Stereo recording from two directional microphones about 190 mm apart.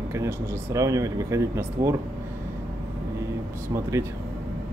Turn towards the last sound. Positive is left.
turn(degrees=-15)  # may be behind; listen again after turning